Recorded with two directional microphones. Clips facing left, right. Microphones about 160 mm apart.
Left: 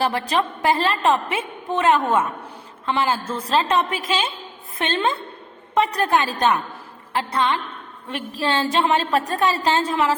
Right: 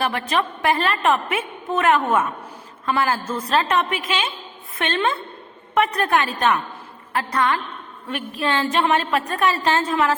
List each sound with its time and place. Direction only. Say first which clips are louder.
0.0 s a woman's voice: left 1 dB; 30° left (ahead or behind)